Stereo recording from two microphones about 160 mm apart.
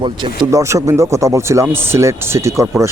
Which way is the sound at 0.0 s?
30° right (ahead or behind).